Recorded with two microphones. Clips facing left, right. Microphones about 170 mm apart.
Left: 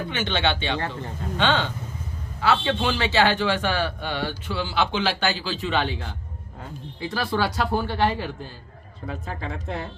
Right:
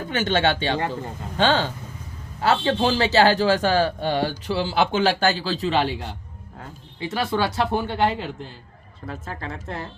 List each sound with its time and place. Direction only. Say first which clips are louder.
0.1 s a man's voice: right 5 dB; 40° right (ahead or behind)
7.0 s speech: right 1 dB; 20° right (ahead or behind)
9.0 s speech: left 1 dB; centre (ahead or behind)